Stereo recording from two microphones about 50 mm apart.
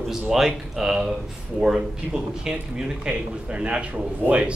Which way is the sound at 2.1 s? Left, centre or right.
Centre.